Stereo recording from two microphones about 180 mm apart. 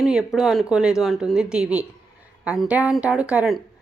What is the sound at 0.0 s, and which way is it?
Speech, centre (ahead or behind).